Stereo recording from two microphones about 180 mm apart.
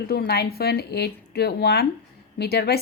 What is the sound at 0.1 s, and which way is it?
A woman's voice, 60° left (ahead or behind).